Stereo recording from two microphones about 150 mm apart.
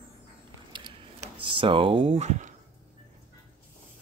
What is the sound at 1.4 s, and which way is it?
Speech, 35° right (ahead or behind).